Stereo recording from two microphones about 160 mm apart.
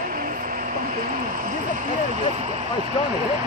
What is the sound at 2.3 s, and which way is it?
Vehicle, 45° right (ahead or behind).